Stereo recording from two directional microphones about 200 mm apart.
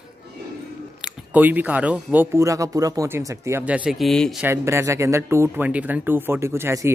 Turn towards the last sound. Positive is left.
turn(degrees=-10)  # may be behind; listen again after turning